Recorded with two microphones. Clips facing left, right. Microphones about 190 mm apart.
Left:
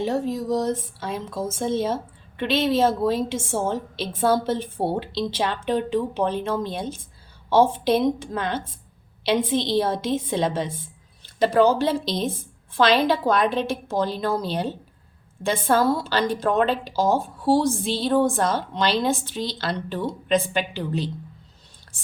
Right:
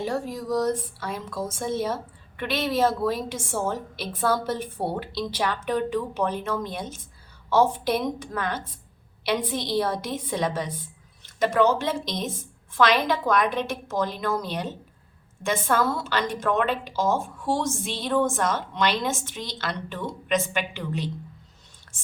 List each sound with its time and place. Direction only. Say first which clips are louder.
0.0 s a woman's voice: left 4 dB; 25° left (ahead or behind)